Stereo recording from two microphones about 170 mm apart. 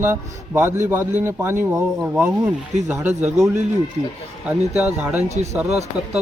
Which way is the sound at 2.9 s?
15° right (ahead or behind).